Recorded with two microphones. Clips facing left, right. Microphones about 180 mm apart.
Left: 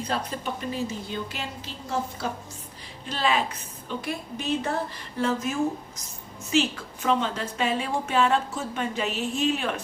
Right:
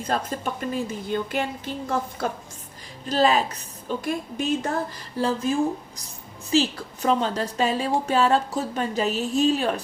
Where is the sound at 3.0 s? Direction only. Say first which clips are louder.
Right 5 dB; 40° right (ahead or behind).